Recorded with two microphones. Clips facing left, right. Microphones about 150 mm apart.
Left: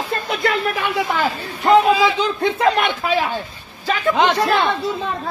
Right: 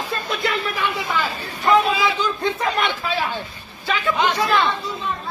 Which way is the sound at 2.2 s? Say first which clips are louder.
Left 5 dB; 65° left (ahead or behind).